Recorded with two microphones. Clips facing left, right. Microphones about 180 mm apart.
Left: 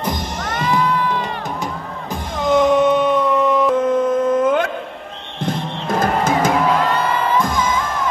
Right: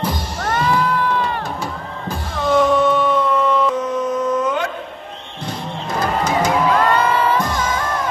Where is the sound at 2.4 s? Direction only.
20° left (ahead or behind).